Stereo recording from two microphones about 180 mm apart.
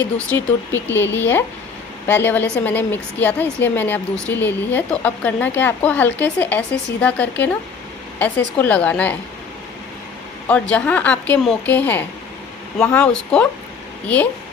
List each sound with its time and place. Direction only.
0.8 s speech: 90° left
1.1 s a woman's voice: 10° left (ahead or behind)
10.5 s a woman's voice: 10° left (ahead or behind)